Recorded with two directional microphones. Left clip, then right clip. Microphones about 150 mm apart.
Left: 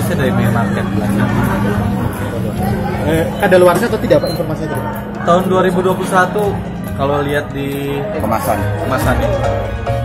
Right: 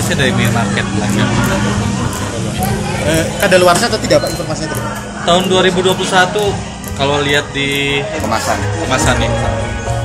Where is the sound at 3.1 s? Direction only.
45° left (ahead or behind).